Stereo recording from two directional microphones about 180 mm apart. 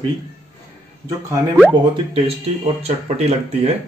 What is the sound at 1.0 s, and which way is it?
Speech, 20° right (ahead or behind).